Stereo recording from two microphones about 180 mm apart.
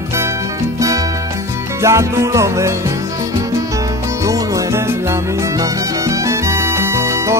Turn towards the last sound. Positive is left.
turn(degrees=-15)  # may be behind; listen again after turning